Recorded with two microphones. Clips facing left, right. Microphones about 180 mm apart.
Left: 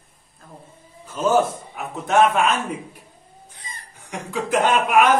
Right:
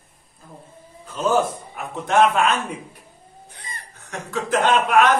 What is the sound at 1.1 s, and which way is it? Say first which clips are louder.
Speech: left 1 dB; 5° left (ahead or behind).